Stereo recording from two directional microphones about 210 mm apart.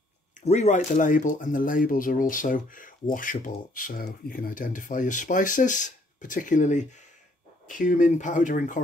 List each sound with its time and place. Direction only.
0.5 s speech: 35° left (ahead or behind)